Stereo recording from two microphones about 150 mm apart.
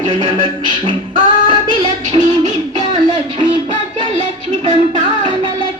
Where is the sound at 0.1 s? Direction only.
30° right (ahead or behind).